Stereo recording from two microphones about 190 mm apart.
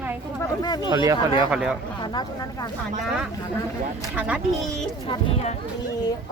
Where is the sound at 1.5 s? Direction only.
5° right (ahead or behind).